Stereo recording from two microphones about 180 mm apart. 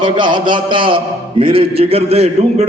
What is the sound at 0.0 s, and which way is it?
A man's voice, 25° right (ahead or behind).